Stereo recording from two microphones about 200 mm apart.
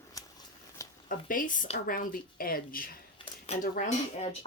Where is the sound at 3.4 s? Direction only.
35° left (ahead or behind).